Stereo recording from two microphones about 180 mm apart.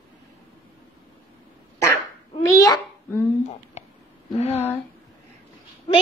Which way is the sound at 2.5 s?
20° left (ahead or behind).